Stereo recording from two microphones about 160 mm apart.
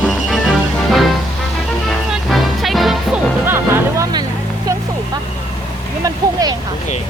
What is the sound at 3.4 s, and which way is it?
Music, 15° right (ahead or behind).